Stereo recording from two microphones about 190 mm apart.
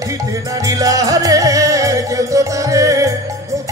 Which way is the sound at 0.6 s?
20° right (ahead or behind).